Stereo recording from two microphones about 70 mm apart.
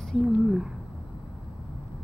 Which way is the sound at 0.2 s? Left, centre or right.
Centre.